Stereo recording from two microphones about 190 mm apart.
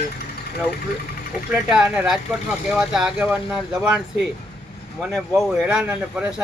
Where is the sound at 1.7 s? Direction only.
5° right (ahead or behind).